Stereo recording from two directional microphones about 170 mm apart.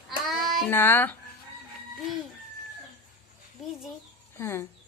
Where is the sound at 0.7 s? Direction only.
10° left (ahead or behind).